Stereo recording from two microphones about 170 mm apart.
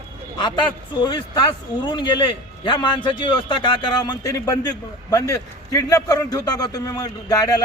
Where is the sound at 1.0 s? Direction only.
25° left (ahead or behind).